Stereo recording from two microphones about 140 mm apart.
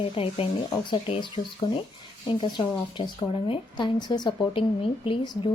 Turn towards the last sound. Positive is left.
turn(degrees=35)  # may be behind; listen again after turning